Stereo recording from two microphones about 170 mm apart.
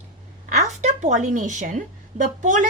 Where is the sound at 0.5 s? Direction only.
45° right (ahead or behind).